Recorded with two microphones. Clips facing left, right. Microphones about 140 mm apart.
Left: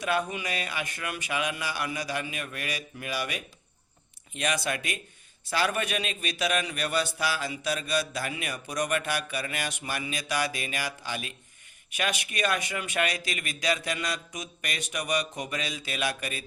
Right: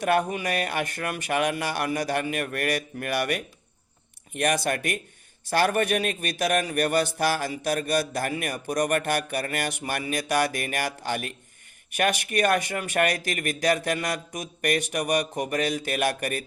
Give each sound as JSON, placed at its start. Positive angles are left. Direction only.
{"t": 0.0, "sound": "a man's voice", "side_deg": -55}